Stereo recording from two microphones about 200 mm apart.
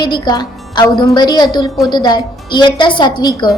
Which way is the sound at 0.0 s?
20° left (ahead or behind).